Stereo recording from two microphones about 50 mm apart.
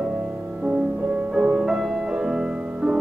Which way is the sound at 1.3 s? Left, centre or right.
Centre.